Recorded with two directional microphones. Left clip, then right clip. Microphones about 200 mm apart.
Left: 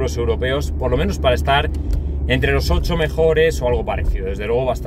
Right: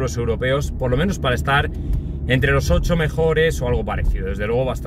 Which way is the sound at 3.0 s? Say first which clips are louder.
Left 5 dB; 15° right (ahead or behind).